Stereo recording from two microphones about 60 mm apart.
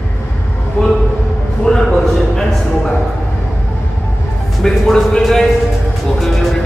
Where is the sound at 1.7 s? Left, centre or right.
Centre.